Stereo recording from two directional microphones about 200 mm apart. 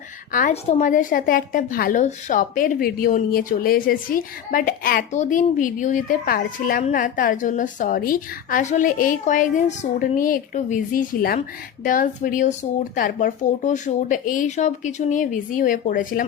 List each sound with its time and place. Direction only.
0.3 s a woman's voice: 40° left (ahead or behind)